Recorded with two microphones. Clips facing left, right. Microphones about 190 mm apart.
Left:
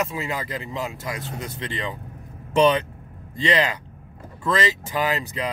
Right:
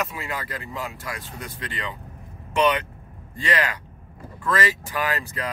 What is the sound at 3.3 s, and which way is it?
Speech, 25° left (ahead or behind).